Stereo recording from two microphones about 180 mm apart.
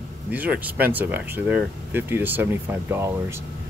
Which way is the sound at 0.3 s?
10° right (ahead or behind).